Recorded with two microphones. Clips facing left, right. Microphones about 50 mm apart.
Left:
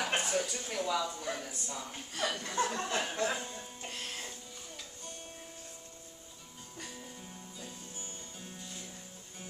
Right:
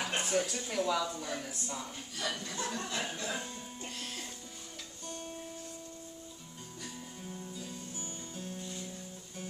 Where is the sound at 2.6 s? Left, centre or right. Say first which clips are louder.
Left 5 dB; left.